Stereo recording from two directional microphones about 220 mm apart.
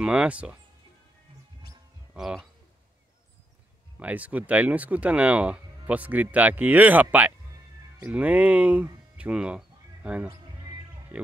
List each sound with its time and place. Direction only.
0.0 s speech: 5° right (ahead or behind)
2.1 s speech: 5° right (ahead or behind)
4.0 s speech: 5° right (ahead or behind)